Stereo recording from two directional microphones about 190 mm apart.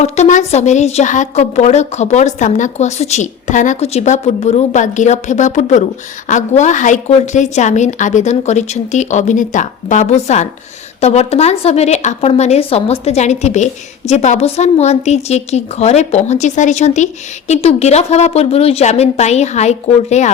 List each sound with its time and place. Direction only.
0.0 s a woman's voice: 40° left (ahead or behind)